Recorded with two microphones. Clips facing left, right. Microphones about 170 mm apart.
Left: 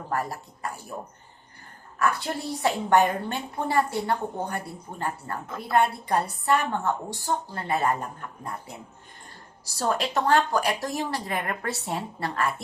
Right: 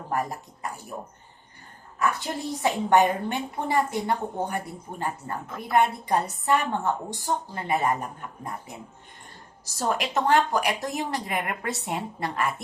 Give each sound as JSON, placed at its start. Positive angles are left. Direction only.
{"t": 0.1, "sound": "a woman's voice", "side_deg": -15}
{"t": 2.0, "sound": "a woman's voice", "side_deg": -20}
{"t": 9.7, "sound": "a woman's voice", "side_deg": -15}